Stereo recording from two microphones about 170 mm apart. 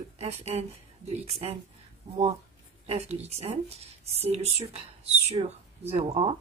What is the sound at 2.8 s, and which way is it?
Speech, 35° right (ahead or behind).